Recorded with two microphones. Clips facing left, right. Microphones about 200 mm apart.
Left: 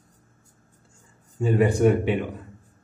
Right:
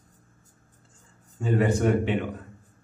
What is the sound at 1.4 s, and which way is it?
Speech, 15° left (ahead or behind).